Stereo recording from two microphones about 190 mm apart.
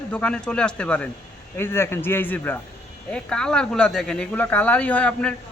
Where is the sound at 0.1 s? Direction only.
5° left (ahead or behind).